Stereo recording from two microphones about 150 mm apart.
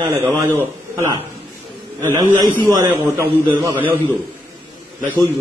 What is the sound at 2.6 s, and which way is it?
A man's voice, 20° right (ahead or behind).